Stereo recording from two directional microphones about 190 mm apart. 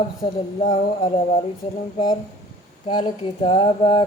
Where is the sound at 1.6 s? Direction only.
30° left (ahead or behind).